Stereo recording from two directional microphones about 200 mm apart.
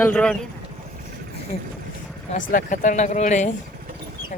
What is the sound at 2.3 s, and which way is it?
Speech, 45° left (ahead or behind).